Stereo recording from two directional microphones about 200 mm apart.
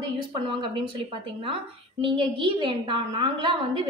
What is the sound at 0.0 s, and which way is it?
Speech, 25° right (ahead or behind).